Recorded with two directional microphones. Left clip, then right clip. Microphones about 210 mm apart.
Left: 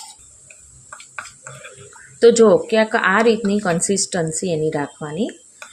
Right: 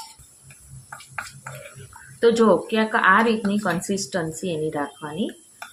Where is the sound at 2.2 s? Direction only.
25° left (ahead or behind).